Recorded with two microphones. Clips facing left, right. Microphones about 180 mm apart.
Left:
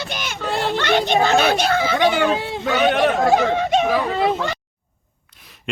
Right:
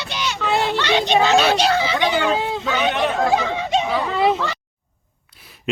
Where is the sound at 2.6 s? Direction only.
45° left (ahead or behind).